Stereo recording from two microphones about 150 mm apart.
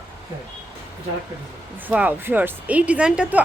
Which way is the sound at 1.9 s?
10° right (ahead or behind).